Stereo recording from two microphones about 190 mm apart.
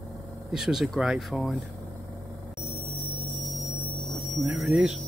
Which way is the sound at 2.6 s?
35° left (ahead or behind).